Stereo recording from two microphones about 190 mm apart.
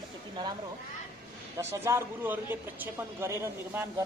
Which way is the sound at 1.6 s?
15° right (ahead or behind).